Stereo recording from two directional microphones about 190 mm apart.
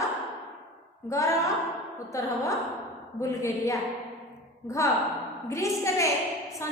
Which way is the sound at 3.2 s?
15° left (ahead or behind).